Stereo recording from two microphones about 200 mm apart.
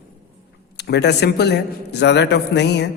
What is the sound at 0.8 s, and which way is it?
A man's voice, 55° left (ahead or behind).